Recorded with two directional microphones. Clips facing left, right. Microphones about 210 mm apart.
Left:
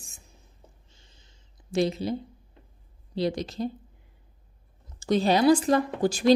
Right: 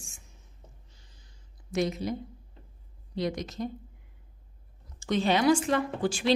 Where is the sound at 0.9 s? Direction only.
25° left (ahead or behind).